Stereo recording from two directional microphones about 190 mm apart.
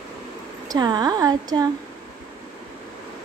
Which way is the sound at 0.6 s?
20° right (ahead or behind).